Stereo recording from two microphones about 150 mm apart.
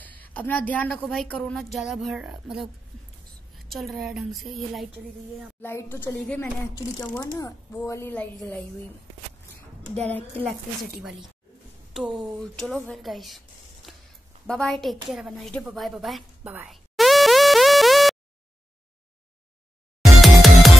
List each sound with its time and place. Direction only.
0.0 s a woman's voice: 10° left (ahead or behind)
5.6 s speech: 15° left (ahead or behind)
10.0 s speech: 10° left (ahead or behind)
11.0 s a woman's voice: centre (ahead or behind)
13.8 s a sound: centre (ahead or behind)
14.4 s a woman's voice: 5° left (ahead or behind)
16.6 s music: centre (ahead or behind)
20.0 s music: centre (ahead or behind)